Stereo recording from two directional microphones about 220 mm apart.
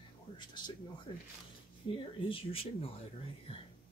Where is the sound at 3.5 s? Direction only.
25° left (ahead or behind).